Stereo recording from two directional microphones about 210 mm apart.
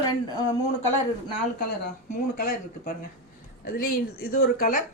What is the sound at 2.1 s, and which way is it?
A woman's voice, 40° left (ahead or behind).